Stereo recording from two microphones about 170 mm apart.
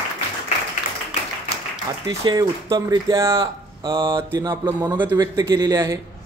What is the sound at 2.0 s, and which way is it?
Speech, 25° right (ahead or behind).